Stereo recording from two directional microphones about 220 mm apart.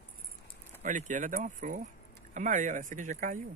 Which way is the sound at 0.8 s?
35° right (ahead or behind).